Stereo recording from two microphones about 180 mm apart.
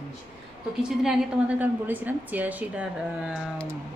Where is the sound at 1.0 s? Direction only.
5° right (ahead or behind).